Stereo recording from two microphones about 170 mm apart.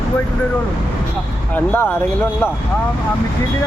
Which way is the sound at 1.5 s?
10° left (ahead or behind).